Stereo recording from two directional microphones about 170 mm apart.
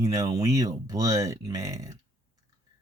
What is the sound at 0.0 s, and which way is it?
Speech, 20° right (ahead or behind).